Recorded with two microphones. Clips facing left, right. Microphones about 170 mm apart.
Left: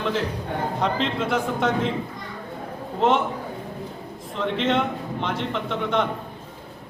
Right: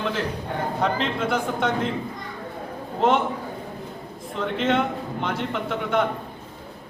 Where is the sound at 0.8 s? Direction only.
Centre (ahead or behind).